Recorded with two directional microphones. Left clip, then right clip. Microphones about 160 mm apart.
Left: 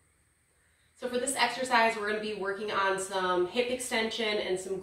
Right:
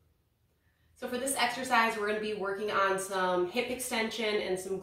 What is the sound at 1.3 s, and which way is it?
Speech, centre (ahead or behind).